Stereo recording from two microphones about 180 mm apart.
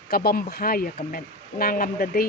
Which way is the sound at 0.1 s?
55° left (ahead or behind).